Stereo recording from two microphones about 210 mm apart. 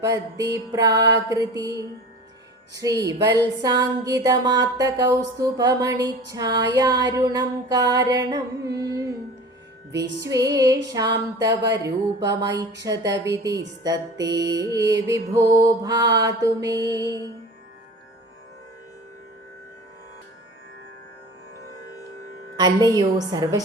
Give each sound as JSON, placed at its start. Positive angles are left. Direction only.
{"t": 0.0, "sound": "a sound", "side_deg": -15}
{"t": 21.7, "sound": "music", "side_deg": 15}
{"t": 22.5, "sound": "a woman's voice", "side_deg": -20}